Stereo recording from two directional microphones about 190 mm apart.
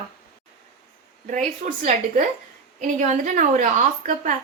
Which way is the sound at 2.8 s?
40° right (ahead or behind).